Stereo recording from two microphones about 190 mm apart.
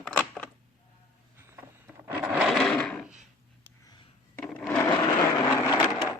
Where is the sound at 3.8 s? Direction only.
25° left (ahead or behind).